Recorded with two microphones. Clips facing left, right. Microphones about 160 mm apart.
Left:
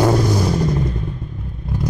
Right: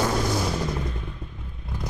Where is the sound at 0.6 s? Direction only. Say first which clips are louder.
Left 8 dB; 40° left (ahead or behind).